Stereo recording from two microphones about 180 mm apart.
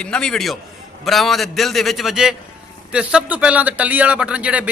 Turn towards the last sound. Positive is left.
turn(degrees=-5)  # may be behind; listen again after turning